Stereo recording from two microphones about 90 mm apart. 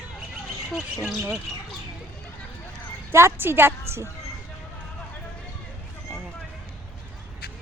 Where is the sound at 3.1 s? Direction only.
30° right (ahead or behind).